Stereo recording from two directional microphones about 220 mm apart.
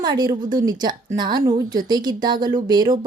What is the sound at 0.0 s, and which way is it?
A woman's voice, 15° right (ahead or behind).